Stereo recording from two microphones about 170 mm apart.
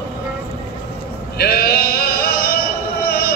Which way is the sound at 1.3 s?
65° left (ahead or behind).